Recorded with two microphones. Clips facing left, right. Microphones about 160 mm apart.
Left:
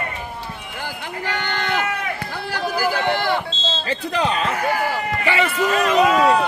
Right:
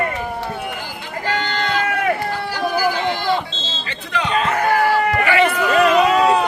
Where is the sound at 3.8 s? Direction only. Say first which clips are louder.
Left 3 dB; 35° left (ahead or behind).